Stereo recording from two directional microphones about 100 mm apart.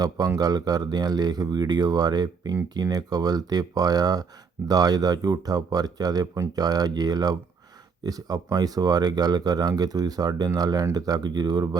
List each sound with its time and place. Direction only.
0.3 s speech: 40° right (ahead or behind)